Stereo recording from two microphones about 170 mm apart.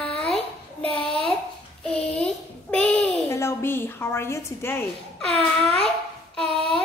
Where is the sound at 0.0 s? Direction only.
5° left (ahead or behind).